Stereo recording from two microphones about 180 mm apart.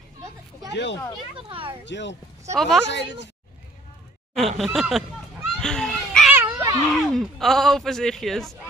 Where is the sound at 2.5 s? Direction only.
Centre (ahead or behind).